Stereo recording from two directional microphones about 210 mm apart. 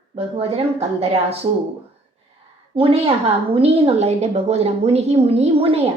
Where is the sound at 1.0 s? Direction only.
30° right (ahead or behind).